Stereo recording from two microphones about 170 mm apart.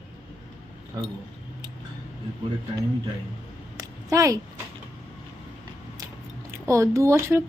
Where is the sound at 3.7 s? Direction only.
20° right (ahead or behind).